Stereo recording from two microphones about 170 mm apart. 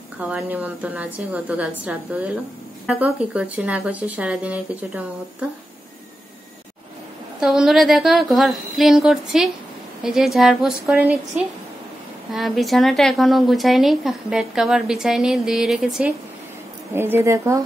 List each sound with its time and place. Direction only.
0.2 s speech: 5° right (ahead or behind)
7.3 s a woman's voice: 5° right (ahead or behind)
12.3 s a woman's voice: centre (ahead or behind)
16.9 s speech: 15° right (ahead or behind)